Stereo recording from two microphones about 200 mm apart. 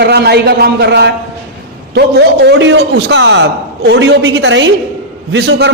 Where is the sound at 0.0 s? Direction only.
55° right (ahead or behind).